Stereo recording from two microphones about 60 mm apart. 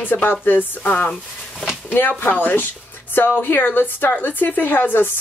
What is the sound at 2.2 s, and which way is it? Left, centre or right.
A woman's voice, left.